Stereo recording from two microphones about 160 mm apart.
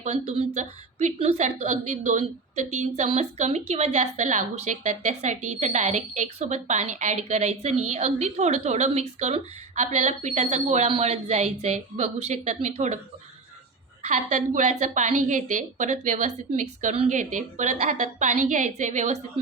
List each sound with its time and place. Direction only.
0.0 s a woman's voice: 45° right (ahead or behind)
14.0 s a woman's voice: 45° right (ahead or behind)